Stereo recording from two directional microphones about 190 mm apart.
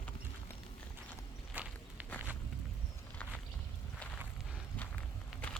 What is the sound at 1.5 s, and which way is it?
Walk, 10° right (ahead or behind).